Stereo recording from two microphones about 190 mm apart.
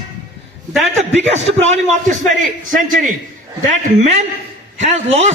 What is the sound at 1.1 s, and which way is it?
A man's voice, 35° right (ahead or behind).